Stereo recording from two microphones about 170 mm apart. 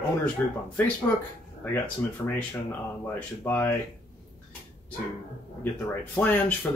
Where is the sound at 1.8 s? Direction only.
10° left (ahead or behind).